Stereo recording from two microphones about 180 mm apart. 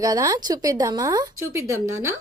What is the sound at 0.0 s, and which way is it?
Speech, 20° right (ahead or behind).